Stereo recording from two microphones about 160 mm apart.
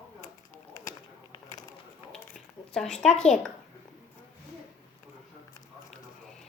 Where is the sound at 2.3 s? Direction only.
5° left (ahead or behind).